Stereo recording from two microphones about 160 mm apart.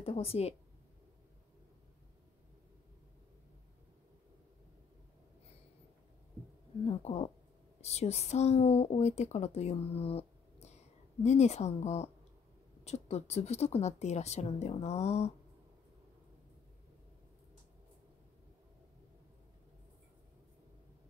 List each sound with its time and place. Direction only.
0.0 s speech: 40° left (ahead or behind)
6.9 s speech: 40° left (ahead or behind)